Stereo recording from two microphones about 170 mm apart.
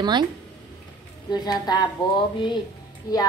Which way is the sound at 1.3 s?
25° left (ahead or behind).